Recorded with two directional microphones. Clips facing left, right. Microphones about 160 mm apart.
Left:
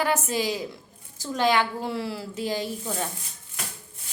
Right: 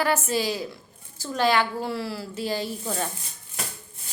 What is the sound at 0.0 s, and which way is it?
A woman's voice, 15° left (ahead or behind).